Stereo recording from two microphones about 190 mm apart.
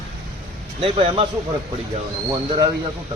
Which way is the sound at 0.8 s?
30° right (ahead or behind).